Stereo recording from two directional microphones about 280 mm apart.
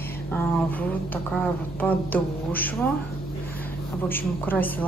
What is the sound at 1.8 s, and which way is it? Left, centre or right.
Speech, centre.